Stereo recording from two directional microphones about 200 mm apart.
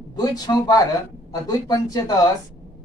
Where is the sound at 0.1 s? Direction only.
20° left (ahead or behind).